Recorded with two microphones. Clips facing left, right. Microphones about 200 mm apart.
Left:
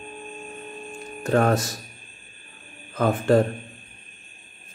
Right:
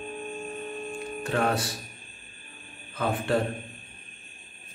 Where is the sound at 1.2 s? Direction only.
45° left (ahead or behind).